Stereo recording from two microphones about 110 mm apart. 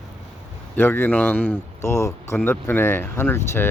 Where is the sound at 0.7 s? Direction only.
20° left (ahead or behind).